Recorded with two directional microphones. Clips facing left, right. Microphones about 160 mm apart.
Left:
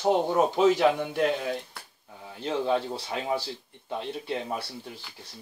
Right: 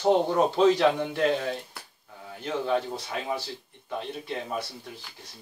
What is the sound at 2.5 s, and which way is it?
Speech, 30° left (ahead or behind).